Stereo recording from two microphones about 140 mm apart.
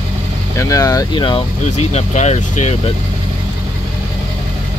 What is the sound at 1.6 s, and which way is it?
Speech, 50° left (ahead or behind).